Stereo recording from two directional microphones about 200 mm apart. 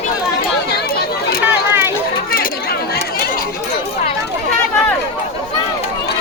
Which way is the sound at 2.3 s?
50° left (ahead or behind).